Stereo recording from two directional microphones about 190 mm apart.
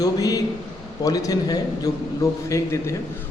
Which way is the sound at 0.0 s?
20° left (ahead or behind).